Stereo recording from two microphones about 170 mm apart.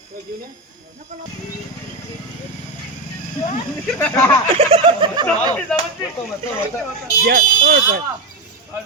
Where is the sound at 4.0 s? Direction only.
10° left (ahead or behind).